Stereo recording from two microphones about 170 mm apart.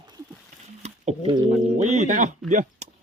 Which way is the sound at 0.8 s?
40° right (ahead or behind).